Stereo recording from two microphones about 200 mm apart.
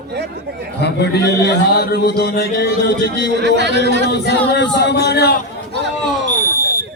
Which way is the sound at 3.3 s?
55° right (ahead or behind).